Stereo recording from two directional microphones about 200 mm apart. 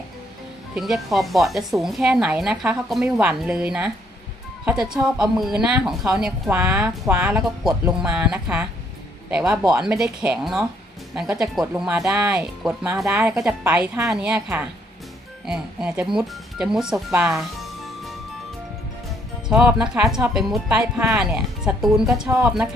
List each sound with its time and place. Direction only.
0.8 s speech: centre (ahead or behind)
17.1 s music: 5° right (ahead or behind)
19.5 s speech: 5° right (ahead or behind)